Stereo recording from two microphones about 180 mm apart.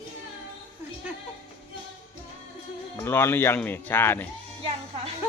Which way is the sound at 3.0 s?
15° left (ahead or behind).